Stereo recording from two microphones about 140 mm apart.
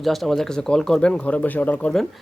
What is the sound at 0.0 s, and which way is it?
Speech, centre (ahead or behind).